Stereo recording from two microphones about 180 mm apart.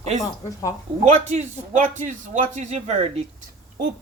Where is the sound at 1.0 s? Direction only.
40° right (ahead or behind).